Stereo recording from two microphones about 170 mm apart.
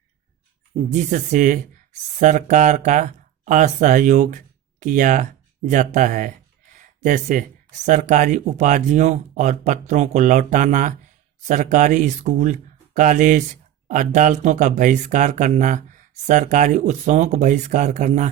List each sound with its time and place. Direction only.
0.9 s speech: 45° right (ahead or behind)